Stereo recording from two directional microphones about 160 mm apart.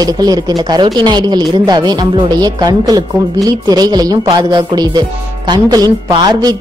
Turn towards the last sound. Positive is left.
turn(degrees=-25)  # may be behind; listen again after turning